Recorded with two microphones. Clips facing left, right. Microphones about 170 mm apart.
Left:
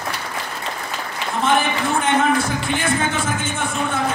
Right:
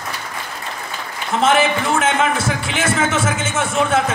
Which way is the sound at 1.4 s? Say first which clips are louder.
Right 3 dB; 90° right.